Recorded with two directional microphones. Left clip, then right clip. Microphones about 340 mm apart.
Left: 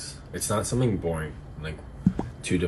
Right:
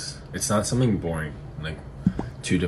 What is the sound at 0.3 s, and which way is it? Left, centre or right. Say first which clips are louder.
Speech: right 3 dB; centre.